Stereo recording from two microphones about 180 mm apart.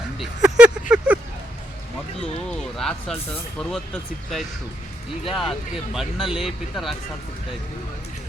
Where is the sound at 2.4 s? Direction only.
5° left (ahead or behind).